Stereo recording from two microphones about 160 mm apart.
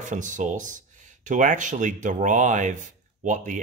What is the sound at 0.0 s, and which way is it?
Speech, 50° right (ahead or behind).